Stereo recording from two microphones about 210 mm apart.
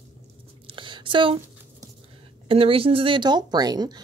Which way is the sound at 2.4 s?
25° right (ahead or behind).